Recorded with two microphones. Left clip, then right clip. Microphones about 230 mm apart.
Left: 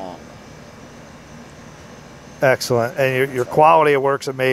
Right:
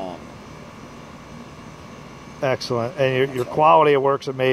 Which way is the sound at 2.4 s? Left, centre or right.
Left.